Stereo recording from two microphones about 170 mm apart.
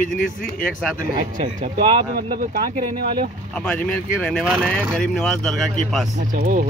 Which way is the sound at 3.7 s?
5° left (ahead or behind).